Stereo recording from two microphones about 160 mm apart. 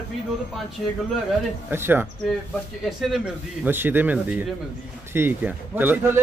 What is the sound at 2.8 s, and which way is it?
Speech, centre (ahead or behind).